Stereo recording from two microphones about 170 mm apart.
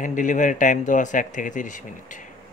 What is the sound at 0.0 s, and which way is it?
Speech, 50° left (ahead or behind).